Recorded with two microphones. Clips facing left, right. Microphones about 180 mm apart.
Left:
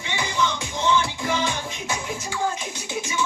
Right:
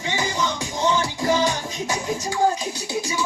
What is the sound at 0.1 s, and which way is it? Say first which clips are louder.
Music: even; 40° right (ahead or behind).